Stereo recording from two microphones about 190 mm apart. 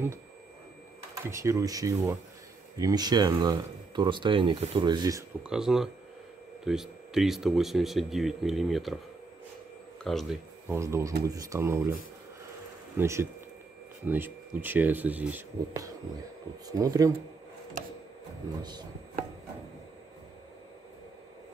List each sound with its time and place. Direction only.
1.2 s speech: 15° right (ahead or behind)
5.4 s speech: 5° right (ahead or behind)
10.0 s speech: centre (ahead or behind)
10.7 s speech: 15° right (ahead or behind)
12.9 s speech: 15° right (ahead or behind)
18.6 s speech: 20° right (ahead or behind)